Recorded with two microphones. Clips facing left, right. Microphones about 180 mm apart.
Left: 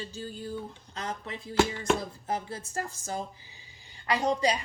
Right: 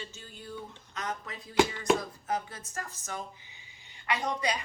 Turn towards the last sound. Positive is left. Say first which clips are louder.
# left 5 dB
turn(degrees=30)  # may be behind; listen again after turning